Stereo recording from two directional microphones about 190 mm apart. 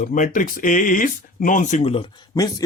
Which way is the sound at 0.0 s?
45° left (ahead or behind).